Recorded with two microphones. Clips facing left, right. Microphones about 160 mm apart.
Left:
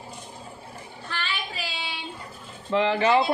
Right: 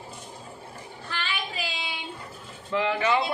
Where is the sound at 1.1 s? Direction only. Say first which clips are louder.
Even; 15° right (ahead or behind).